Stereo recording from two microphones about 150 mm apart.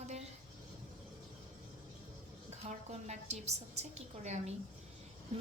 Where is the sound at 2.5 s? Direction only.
50° right (ahead or behind).